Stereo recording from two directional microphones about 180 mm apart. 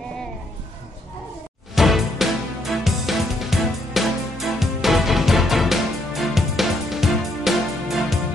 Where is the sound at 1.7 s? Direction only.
Centre (ahead or behind).